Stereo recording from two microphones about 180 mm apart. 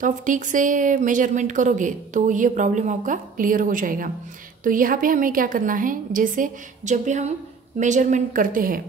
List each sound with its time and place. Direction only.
0.0 s speech: 45° right (ahead or behind)